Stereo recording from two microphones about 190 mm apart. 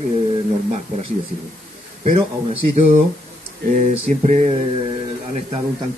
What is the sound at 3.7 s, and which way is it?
Speech, 40° right (ahead or behind).